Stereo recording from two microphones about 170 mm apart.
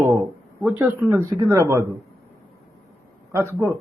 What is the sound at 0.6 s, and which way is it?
A man's voice, 15° right (ahead or behind).